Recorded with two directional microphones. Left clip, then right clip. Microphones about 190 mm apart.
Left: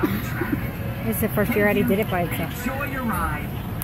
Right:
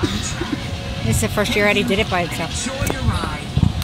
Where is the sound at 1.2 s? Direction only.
5° right (ahead or behind).